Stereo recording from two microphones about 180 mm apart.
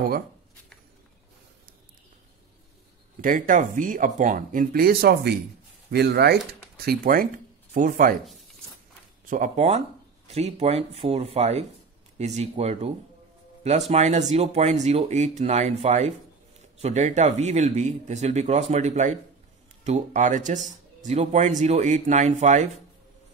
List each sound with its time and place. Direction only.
3.2 s speech: 45° right (ahead or behind)
9.3 s speech: 40° right (ahead or behind)